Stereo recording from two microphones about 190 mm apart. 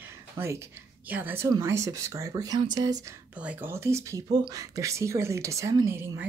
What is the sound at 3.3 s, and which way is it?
Speech, 10° right (ahead or behind).